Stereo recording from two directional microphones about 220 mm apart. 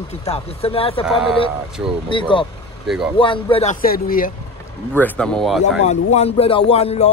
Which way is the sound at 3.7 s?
40° left (ahead or behind).